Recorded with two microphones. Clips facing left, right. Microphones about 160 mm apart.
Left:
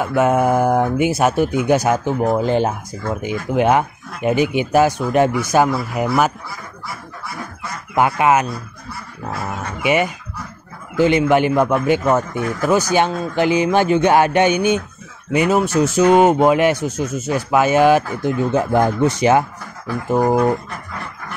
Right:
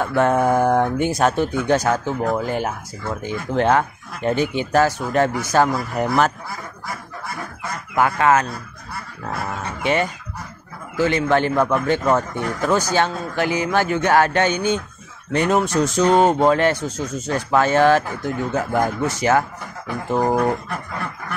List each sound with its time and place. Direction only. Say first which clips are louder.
0.0 s speech: left 2 dB; 5° left (ahead or behind); by 3.2 s 25° left (ahead or behind)
3.2 s speech: left 2 dB; 15° left (ahead or behind)
7.9 s speech: left 2 dB; 15° left (ahead or behind)
9.5 s speech: left 3 dB; 10° left (ahead or behind)